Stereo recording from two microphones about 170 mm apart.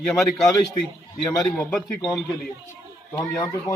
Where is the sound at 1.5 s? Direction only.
10° left (ahead or behind).